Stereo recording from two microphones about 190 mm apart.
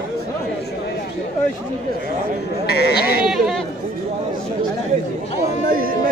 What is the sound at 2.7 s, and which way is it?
Speech, 55° left (ahead or behind).